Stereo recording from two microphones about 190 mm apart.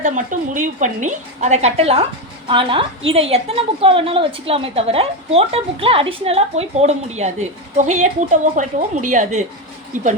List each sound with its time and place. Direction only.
0.0 s a woman's voice: 40° right (ahead or behind)